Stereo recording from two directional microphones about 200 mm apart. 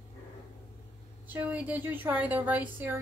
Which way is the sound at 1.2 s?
10° right (ahead or behind).